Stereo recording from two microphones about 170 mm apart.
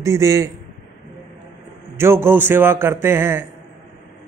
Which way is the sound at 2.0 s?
15° right (ahead or behind).